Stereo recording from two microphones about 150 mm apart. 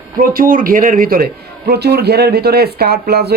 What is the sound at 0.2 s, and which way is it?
A man's voice, 70° right (ahead or behind).